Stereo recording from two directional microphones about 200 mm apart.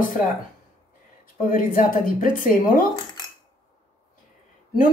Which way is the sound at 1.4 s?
45° left (ahead or behind).